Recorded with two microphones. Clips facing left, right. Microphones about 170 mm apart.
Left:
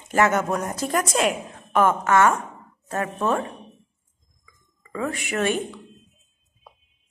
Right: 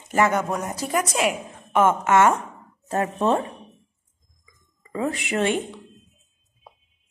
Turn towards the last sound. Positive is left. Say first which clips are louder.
# right 1 dB
turn(degrees=-25)  # may be behind; listen again after turning